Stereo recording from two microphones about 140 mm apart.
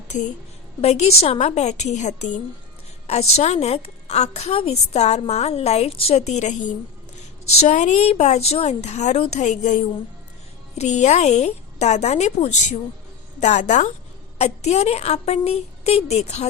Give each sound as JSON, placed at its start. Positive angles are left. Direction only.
{"t": 0.1, "sound": "a woman's voice", "side_deg": 60}
{"t": 0.8, "sound": "a woman's voice", "side_deg": 50}
{"t": 7.6, "sound": "a woman's voice", "side_deg": 60}